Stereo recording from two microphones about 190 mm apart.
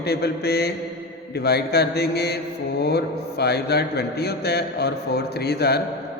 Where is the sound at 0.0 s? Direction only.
55° left (ahead or behind).